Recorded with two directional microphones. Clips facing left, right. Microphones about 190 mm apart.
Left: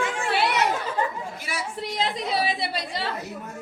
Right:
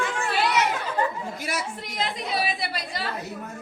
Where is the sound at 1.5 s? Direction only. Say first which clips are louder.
Right 3 dB; 40° right (ahead or behind).